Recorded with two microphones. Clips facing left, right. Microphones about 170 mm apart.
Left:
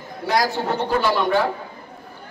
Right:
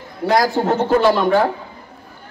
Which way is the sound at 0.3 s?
45° right (ahead or behind).